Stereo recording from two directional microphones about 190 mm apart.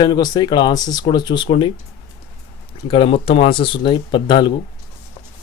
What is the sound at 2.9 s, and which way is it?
Speech, 30° left (ahead or behind).